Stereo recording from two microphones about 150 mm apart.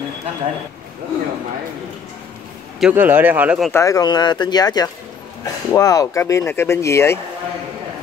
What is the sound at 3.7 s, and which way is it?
Speech, 20° left (ahead or behind).